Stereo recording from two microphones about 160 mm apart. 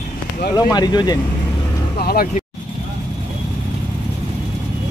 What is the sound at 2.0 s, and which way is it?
Speech, 75° left (ahead or behind).